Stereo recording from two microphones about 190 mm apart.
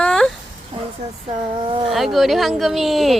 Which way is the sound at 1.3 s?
25° right (ahead or behind).